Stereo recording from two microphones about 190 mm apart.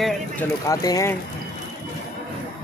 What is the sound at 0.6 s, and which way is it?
Speech, 20° left (ahead or behind).